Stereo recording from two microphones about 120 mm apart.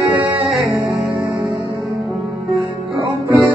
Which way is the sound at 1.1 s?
25° right (ahead or behind).